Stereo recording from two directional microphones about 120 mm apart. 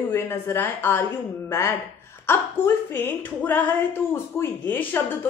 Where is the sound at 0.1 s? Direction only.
20° left (ahead or behind).